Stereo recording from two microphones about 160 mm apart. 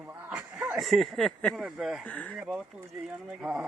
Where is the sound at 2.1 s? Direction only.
10° left (ahead or behind).